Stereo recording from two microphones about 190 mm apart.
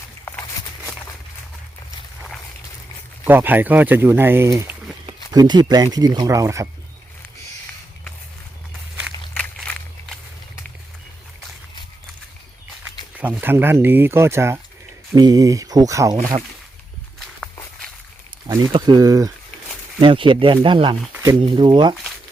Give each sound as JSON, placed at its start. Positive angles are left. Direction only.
{"t": 3.2, "sound": "speech", "side_deg": -10}
{"t": 9.3, "sound": "walk", "side_deg": 5}
{"t": 13.1, "sound": "speech", "side_deg": -10}
{"t": 18.7, "sound": "speech", "side_deg": -20}